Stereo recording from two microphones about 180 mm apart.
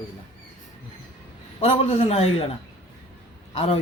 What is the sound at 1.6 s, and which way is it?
Speech, 35° left (ahead or behind).